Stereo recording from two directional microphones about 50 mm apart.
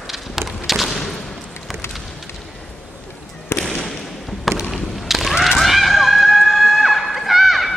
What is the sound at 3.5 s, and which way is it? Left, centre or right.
Fireworks, left.